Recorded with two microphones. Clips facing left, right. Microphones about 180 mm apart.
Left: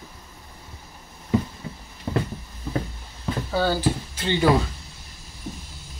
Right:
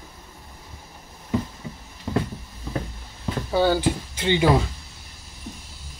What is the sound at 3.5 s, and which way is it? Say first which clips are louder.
Speech: right 3 dB; 15° right (ahead or behind).